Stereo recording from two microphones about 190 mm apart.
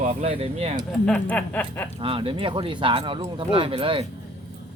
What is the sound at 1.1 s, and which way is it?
Chuckle, 5° left (ahead or behind).